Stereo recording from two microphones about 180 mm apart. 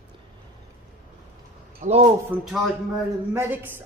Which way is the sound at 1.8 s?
40° right (ahead or behind).